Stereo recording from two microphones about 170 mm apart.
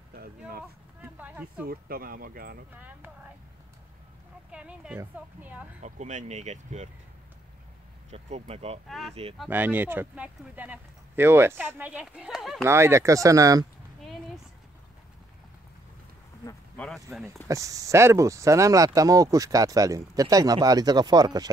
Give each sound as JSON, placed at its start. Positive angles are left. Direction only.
{"t": 1.0, "sound": "a sound", "side_deg": -10}
{"t": 1.7, "sound": "speech", "side_deg": -60}
{"t": 2.7, "sound": "a man's voice", "side_deg": -10}
{"t": 4.5, "sound": "a man's voice", "side_deg": -5}
{"t": 5.8, "sound": "speech", "side_deg": -45}
{"t": 8.1, "sound": "speech", "side_deg": -40}
{"t": 8.8, "sound": "speech", "side_deg": 0}
{"t": 9.5, "sound": "a man's voice", "side_deg": -10}
{"t": 12.6, "sound": "speech", "side_deg": -15}
{"t": 16.7, "sound": "speech", "side_deg": 5}
{"t": 17.5, "sound": "speech", "side_deg": -20}